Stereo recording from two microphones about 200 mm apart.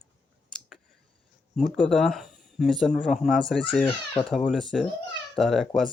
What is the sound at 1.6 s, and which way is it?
Speech, centre (ahead or behind).